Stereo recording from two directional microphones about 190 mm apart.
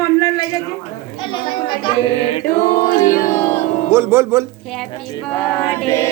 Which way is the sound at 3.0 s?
15° left (ahead or behind).